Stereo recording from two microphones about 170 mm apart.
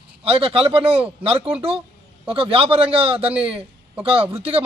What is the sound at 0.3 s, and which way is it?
Speech, 35° right (ahead or behind).